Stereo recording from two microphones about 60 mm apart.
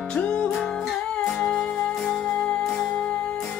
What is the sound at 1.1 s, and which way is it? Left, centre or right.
Music, centre.